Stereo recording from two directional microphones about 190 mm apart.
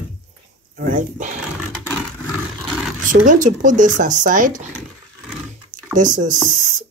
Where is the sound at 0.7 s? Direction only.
45° right (ahead or behind).